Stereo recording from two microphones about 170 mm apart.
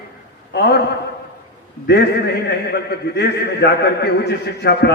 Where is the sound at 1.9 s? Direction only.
90° left.